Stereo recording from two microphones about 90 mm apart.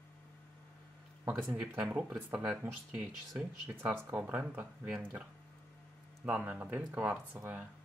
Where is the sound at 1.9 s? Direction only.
20° right (ahead or behind).